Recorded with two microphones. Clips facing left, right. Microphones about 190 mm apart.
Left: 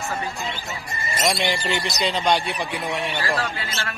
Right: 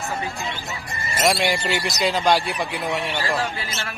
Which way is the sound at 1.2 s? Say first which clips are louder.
Right 3 dB; centre (ahead or behind).